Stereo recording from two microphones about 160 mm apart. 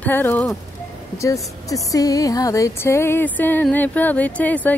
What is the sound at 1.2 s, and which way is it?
Speech, 20° left (ahead or behind).